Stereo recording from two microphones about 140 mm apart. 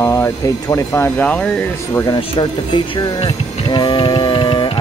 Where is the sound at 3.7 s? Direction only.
35° left (ahead or behind).